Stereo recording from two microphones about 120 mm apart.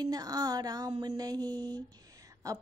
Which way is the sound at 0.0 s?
30° right (ahead or behind).